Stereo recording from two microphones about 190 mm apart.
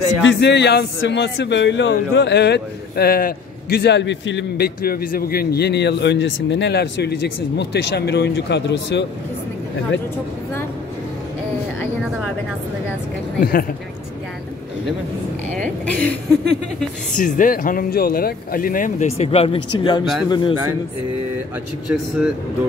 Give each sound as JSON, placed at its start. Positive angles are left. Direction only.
{"t": 0.2, "sound": "a man's voice", "side_deg": 70}
{"t": 13.4, "sound": "speech", "side_deg": 50}
{"t": 15.5, "sound": "a sound", "side_deg": 5}
{"t": 17.2, "sound": "a man's voice", "side_deg": 45}
{"t": 21.8, "sound": "speech", "side_deg": -5}